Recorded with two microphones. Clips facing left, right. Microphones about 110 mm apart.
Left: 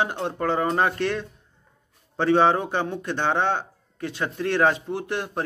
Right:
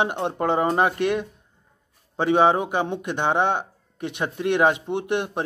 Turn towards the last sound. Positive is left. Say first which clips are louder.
# right 4 dB
turn(degrees=-20)  # may be behind; listen again after turning